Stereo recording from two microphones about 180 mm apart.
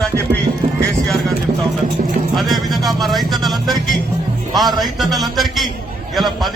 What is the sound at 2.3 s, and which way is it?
Speech, centre (ahead or behind).